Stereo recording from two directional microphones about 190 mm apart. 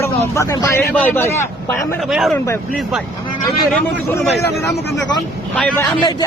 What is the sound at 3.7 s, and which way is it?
Speech, 5° left (ahead or behind).